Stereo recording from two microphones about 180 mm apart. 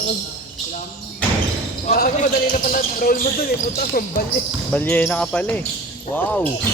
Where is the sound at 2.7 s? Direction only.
50° left (ahead or behind).